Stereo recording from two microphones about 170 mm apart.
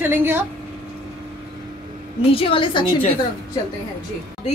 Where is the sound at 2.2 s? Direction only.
35° left (ahead or behind).